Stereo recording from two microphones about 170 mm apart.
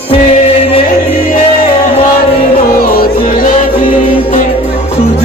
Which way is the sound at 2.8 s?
60° left (ahead or behind).